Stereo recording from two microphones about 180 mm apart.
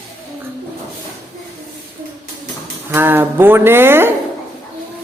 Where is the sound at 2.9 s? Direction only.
10° right (ahead or behind).